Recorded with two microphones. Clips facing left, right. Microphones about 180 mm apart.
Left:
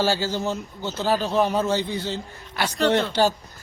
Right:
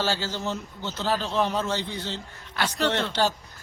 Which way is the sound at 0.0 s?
10° left (ahead or behind).